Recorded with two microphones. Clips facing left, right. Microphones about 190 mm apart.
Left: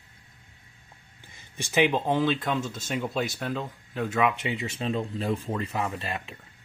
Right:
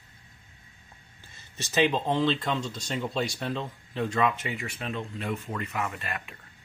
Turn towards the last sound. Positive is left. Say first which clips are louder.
# left 2 dB
turn(degrees=30)  # may be behind; listen again after turning